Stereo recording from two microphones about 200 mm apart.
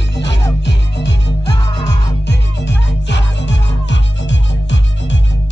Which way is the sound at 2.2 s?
60° left (ahead or behind).